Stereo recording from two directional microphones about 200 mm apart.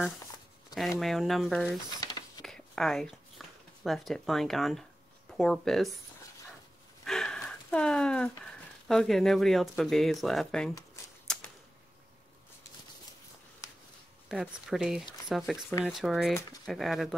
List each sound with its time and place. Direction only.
0.7 s speech: centre (ahead or behind)
2.0 s a sound: 20° left (ahead or behind)
2.4 s a sound: 5° left (ahead or behind)
5.3 s speech: centre (ahead or behind)
7.1 s speech: centre (ahead or behind)
11.3 s typewriter: 5° left (ahead or behind)
14.3 s speech: centre (ahead or behind)